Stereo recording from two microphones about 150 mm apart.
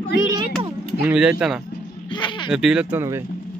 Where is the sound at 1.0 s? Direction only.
5° right (ahead or behind).